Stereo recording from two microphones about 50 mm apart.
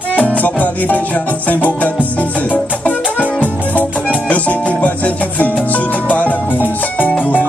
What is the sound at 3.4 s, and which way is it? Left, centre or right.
Music, right.